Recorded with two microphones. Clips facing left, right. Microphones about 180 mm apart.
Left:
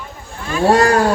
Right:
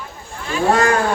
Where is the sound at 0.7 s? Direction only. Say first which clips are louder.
Left 4 dB; 35° left (ahead or behind).